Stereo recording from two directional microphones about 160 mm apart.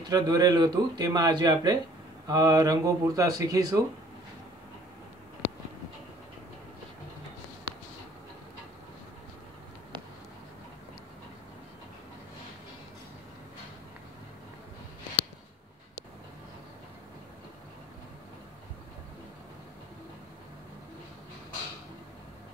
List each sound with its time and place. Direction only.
0.0 s speech: 25° right (ahead or behind)